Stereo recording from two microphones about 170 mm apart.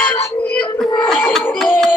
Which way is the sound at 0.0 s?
10° left (ahead or behind).